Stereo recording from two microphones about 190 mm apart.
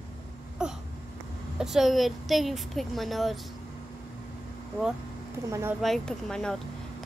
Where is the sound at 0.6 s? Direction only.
5° right (ahead or behind).